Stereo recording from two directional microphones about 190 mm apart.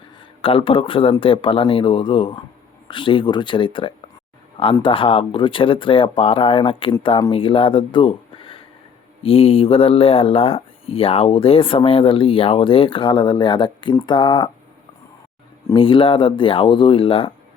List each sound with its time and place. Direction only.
0.4 s speech: 30° left (ahead or behind)
15.7 s speech: 25° left (ahead or behind)